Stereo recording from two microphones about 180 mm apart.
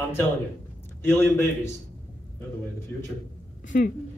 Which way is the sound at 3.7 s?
55° left (ahead or behind).